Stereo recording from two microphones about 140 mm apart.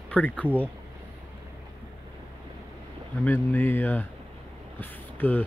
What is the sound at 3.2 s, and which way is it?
Speech, 15° left (ahead or behind).